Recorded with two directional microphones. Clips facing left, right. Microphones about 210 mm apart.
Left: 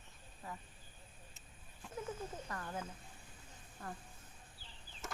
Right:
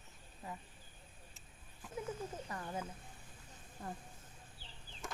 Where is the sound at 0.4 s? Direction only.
15° right (ahead or behind).